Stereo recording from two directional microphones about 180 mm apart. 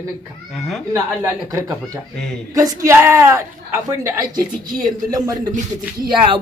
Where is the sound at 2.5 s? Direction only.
20° right (ahead or behind).